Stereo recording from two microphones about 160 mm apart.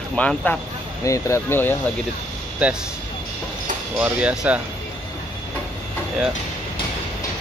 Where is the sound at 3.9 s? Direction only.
10° right (ahead or behind).